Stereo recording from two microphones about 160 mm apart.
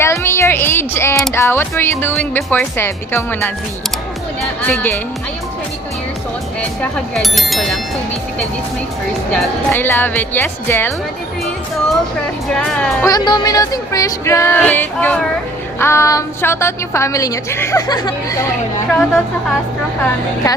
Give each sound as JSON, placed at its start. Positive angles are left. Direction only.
{"t": 0.0, "sound": "music", "side_deg": 15}
{"t": 4.6, "sound": "music", "side_deg": 10}
{"t": 7.1, "sound": "a woman's voice", "side_deg": 0}
{"t": 9.3, "sound": "music", "side_deg": 10}
{"t": 12.5, "sound": "a woman's voice", "side_deg": 5}
{"t": 13.1, "sound": "music", "side_deg": 25}
{"t": 15.8, "sound": "a woman's voice", "side_deg": 15}
{"t": 18.9, "sound": "a woman's voice", "side_deg": 5}